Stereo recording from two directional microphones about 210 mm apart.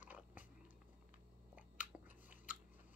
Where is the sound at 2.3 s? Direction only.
40° left (ahead or behind).